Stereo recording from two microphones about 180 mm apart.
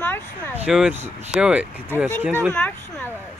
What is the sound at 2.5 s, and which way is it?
Speech, 10° left (ahead or behind).